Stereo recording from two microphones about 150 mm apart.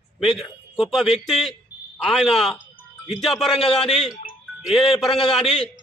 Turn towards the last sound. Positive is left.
turn(degrees=0)  # may be behind; listen again after turning